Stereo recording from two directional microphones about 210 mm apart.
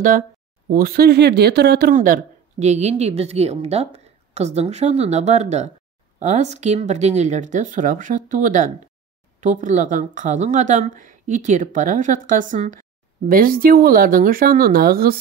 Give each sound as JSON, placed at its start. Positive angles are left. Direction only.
{"t": 0.7, "sound": "speech", "side_deg": -45}